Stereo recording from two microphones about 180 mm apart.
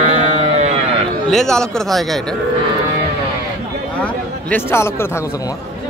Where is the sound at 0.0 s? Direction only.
40° right (ahead or behind).